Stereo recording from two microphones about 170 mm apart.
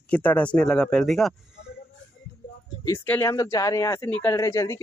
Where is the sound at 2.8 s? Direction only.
10° left (ahead or behind).